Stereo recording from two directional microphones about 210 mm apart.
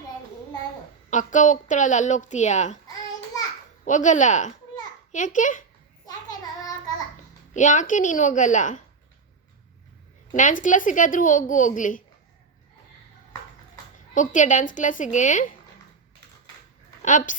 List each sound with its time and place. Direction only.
1.1 s speech: 35° left (ahead or behind)
3.8 s speech: 35° left (ahead or behind)
7.5 s speech: 35° left (ahead or behind)
10.3 s speech: 35° left (ahead or behind)
14.1 s speech: 35° left (ahead or behind)
17.0 s speech: 35° left (ahead or behind)